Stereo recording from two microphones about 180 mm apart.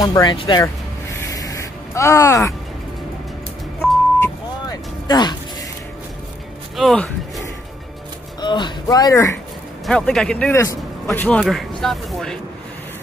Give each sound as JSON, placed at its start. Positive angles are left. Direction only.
{"t": 0.0, "sound": "speech", "side_deg": 25}
{"t": 1.3, "sound": "a sound", "side_deg": 20}
{"t": 4.2, "sound": "music", "side_deg": 20}
{"t": 6.8, "sound": "speech", "side_deg": 0}
{"t": 8.4, "sound": "speech", "side_deg": 25}
{"t": 9.8, "sound": "speech", "side_deg": 5}
{"t": 10.5, "sound": "a man's voice", "side_deg": 15}